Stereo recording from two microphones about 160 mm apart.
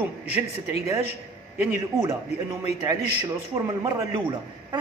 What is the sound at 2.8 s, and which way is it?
A man's voice, 25° right (ahead or behind).